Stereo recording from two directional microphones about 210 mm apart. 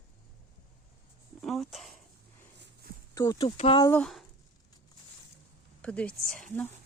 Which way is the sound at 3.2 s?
20° left (ahead or behind).